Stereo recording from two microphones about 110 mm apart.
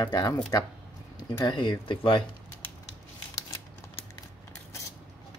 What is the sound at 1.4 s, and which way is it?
Speech, 45° left (ahead or behind).